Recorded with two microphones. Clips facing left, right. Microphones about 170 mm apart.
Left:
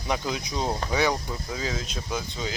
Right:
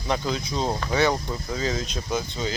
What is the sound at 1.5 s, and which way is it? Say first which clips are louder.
Speech: right 5 dB; 5° left (ahead or behind).